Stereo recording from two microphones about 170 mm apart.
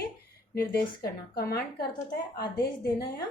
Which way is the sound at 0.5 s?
65° left (ahead or behind).